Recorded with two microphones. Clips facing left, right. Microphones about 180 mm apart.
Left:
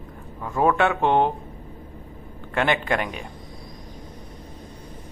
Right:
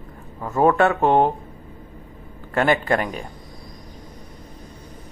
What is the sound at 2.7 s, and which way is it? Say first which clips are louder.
Speech: right 3 dB; 40° right (ahead or behind).